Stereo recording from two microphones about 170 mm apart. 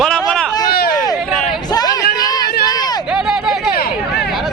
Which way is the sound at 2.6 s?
25° left (ahead or behind).